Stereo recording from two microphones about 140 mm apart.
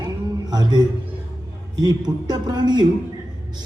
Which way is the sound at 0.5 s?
30° right (ahead or behind).